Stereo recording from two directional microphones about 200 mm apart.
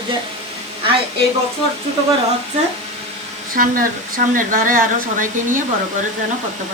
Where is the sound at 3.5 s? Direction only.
45° right (ahead or behind).